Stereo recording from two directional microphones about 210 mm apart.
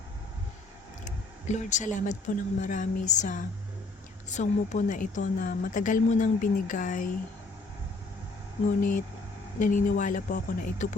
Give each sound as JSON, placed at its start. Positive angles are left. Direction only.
{"t": 1.0, "sound": "a woman's voice", "side_deg": 35}
{"t": 8.8, "sound": "a woman's voice", "side_deg": 40}